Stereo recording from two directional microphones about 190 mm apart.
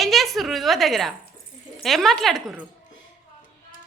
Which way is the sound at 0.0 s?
Centre (ahead or behind).